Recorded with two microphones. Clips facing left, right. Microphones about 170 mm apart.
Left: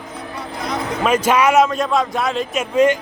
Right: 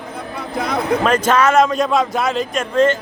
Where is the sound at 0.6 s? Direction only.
60° right (ahead or behind).